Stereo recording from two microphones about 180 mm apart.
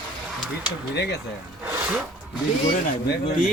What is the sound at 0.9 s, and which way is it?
Speech, 70° left (ahead or behind).